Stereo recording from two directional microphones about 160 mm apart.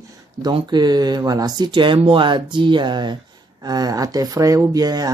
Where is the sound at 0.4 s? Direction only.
30° right (ahead or behind).